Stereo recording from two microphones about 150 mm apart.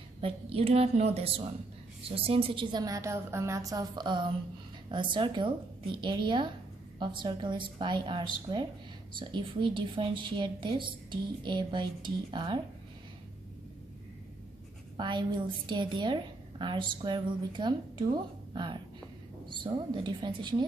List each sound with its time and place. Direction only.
0.2 s a woman's voice: 40° right (ahead or behind)
15.0 s a woman's voice: 30° right (ahead or behind)